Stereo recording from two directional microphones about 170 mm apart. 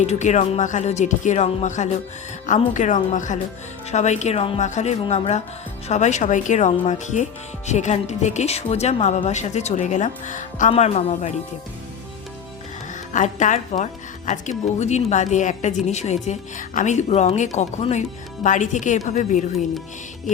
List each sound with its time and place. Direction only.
0.0 s a woman's voice: 45° left (ahead or behind)
12.9 s a woman's voice: 45° left (ahead or behind)